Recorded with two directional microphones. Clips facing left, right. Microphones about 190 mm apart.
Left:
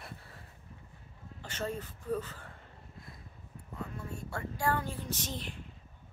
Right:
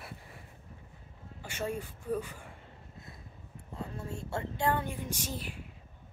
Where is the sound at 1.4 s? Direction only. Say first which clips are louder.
Right 1 dB; 10° right (ahead or behind).